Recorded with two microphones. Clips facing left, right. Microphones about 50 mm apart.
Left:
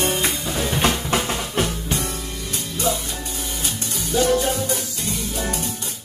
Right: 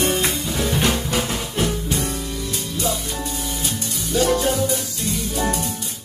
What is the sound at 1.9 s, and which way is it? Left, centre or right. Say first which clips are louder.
Music: right 2 dB; left.